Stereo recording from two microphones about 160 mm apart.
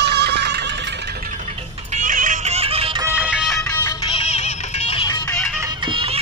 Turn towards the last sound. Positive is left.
turn(degrees=-35)  # may be behind; listen again after turning